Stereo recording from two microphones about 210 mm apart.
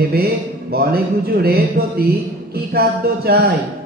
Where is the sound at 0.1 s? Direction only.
50° right (ahead or behind).